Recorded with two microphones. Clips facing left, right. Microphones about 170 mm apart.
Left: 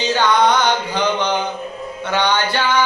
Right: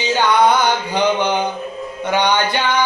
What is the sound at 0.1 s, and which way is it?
Music, 10° right (ahead or behind).